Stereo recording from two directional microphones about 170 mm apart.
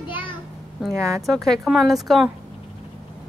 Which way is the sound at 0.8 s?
5° left (ahead or behind).